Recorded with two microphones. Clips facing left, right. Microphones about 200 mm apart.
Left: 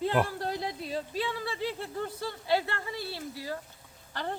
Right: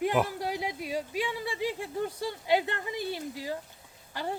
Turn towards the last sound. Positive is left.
turn(degrees=-10)  # may be behind; listen again after turning